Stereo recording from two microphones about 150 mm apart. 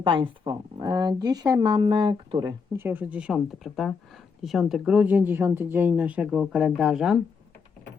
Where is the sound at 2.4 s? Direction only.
15° right (ahead or behind).